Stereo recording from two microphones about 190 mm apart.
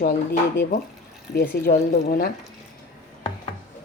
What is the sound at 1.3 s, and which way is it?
Speech, 55° left (ahead or behind).